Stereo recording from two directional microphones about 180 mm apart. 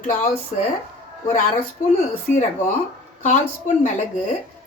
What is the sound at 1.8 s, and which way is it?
Speech, 45° left (ahead or behind).